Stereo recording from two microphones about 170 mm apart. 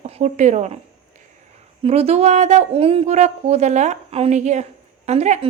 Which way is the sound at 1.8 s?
35° right (ahead or behind).